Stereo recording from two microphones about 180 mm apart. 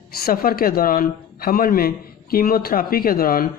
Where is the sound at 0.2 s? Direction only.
55° left (ahead or behind).